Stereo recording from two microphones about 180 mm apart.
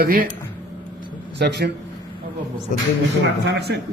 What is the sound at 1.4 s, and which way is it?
Speech, 65° right (ahead or behind).